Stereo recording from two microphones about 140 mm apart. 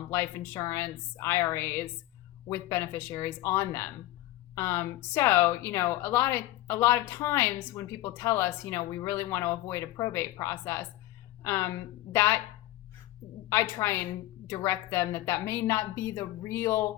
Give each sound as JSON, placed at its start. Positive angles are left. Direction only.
{"t": 0.1, "sound": "a woman's voice", "side_deg": 20}
{"t": 13.5, "sound": "a woman's voice", "side_deg": 20}